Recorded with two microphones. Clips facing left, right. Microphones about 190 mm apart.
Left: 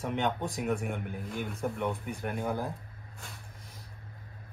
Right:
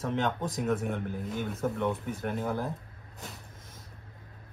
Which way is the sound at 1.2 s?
Centre (ahead or behind).